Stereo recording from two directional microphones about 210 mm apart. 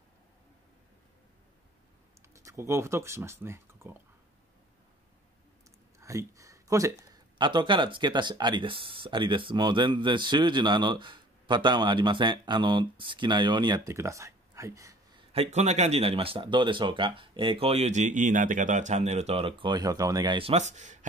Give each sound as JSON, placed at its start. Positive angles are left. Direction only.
{"t": 2.3, "sound": "speech", "side_deg": -15}
{"t": 5.9, "sound": "speech", "side_deg": -15}
{"t": 15.3, "sound": "speech", "side_deg": -30}